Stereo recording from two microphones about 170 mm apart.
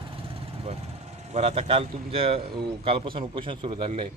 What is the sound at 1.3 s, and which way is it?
Speech, 40° right (ahead or behind).